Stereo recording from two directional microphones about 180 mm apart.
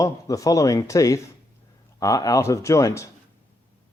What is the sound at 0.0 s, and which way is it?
Speech, 20° left (ahead or behind).